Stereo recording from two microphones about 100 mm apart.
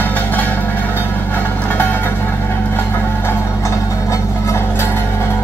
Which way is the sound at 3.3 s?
30° left (ahead or behind).